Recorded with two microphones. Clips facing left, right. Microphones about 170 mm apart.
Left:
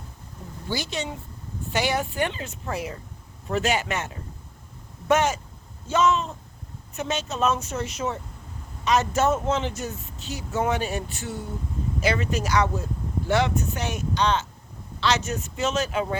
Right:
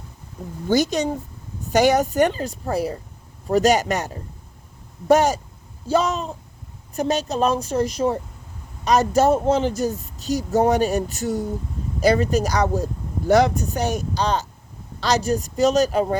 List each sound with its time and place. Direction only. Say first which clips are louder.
0.7 s speech: right 10 dB; 40° right (ahead or behind)